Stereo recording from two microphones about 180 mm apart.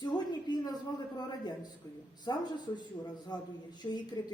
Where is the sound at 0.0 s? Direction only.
25° left (ahead or behind).